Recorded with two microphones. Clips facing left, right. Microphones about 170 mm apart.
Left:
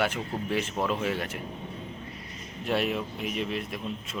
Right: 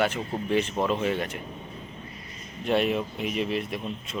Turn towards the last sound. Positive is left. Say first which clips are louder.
# right 2 dB
turn(degrees=0)  # may be behind; listen again after turning